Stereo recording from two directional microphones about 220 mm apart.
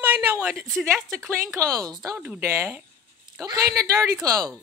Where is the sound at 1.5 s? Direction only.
15° right (ahead or behind).